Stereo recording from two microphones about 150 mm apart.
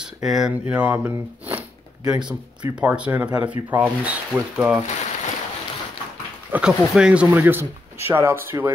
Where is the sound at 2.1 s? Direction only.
30° right (ahead or behind).